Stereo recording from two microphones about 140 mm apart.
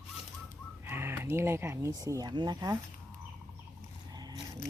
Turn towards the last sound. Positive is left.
turn(degrees=-30)  # may be behind; listen again after turning